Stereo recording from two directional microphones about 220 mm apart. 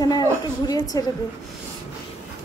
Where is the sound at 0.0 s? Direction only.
15° left (ahead or behind).